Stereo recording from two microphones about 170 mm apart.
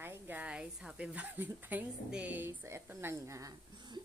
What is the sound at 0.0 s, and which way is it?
A woman's voice, 10° right (ahead or behind).